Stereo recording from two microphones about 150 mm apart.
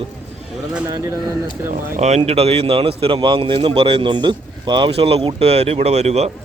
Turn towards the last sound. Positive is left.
turn(degrees=-45)  # may be behind; listen again after turning